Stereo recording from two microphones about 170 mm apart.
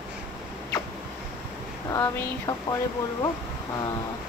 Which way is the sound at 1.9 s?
20° left (ahead or behind).